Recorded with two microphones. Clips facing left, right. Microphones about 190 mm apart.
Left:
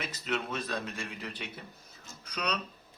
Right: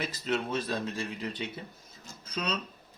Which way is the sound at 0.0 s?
35° right (ahead or behind).